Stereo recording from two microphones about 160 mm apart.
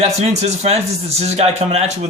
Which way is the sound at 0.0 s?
45° right (ahead or behind).